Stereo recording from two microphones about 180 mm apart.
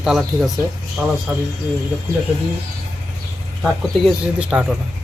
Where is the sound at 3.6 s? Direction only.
5° right (ahead or behind).